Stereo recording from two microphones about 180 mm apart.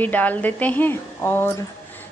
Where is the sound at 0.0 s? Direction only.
10° left (ahead or behind).